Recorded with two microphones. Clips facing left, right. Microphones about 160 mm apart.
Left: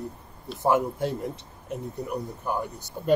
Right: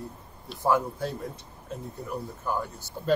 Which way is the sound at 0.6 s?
20° left (ahead or behind).